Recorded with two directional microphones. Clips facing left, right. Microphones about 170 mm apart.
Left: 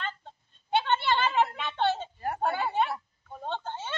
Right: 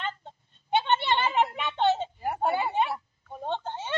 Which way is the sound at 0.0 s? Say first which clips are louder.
Right 3 dB; 20° right (ahead or behind).